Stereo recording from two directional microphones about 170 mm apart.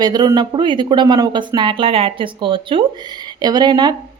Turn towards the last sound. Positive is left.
turn(degrees=-25)  # may be behind; listen again after turning